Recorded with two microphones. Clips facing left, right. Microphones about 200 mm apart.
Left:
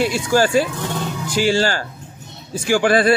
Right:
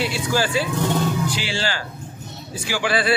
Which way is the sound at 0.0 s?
50° left (ahead or behind).